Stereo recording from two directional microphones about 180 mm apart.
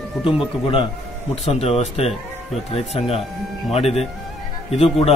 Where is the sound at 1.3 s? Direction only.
35° left (ahead or behind).